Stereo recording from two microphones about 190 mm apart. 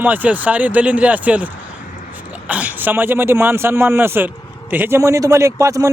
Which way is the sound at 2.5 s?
10° right (ahead or behind).